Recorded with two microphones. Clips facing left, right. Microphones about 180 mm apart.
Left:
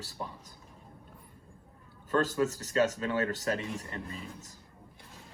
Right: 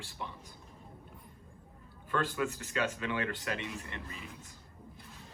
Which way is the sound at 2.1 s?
40° left (ahead or behind).